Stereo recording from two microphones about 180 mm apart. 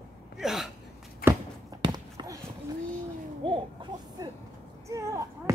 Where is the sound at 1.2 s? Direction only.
20° right (ahead or behind).